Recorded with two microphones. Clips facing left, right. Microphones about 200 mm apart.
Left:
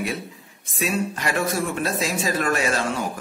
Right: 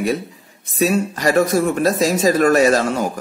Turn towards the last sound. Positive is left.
turn(degrees=-40)  # may be behind; listen again after turning